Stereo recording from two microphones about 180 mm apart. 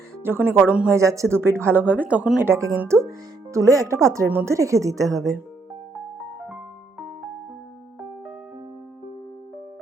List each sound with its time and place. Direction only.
0.2 s a woman's voice: 10° right (ahead or behind)